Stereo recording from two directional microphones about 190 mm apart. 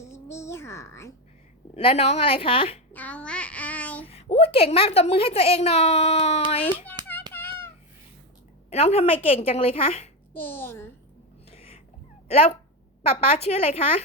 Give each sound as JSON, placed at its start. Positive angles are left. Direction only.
{"t": 0.1, "sound": "a sound", "side_deg": 15}
{"t": 1.7, "sound": "a woman's voice", "side_deg": 30}
{"t": 2.9, "sound": "child singing", "side_deg": 10}
{"t": 4.1, "sound": "speech", "side_deg": 30}
{"t": 7.0, "sound": "hands", "side_deg": -20}
{"t": 7.3, "sound": "a sound", "side_deg": 10}
{"t": 8.7, "sound": "a woman's voice", "side_deg": 35}
{"t": 10.3, "sound": "a child's voice", "side_deg": 10}
{"t": 11.5, "sound": "cat", "side_deg": 30}
{"t": 12.3, "sound": "a woman's voice", "side_deg": 35}